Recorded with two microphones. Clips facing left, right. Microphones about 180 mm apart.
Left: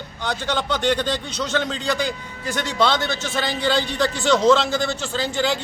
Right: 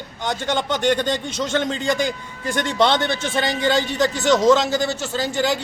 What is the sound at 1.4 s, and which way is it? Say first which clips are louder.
A man's voice: right 2 dB; 50° right (ahead or behind).